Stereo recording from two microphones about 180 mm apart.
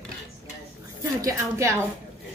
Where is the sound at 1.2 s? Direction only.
15° right (ahead or behind).